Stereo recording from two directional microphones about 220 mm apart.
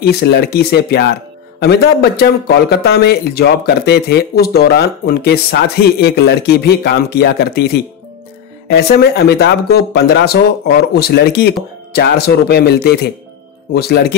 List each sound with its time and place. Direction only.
0.0 s a man's voice: 45° left (ahead or behind)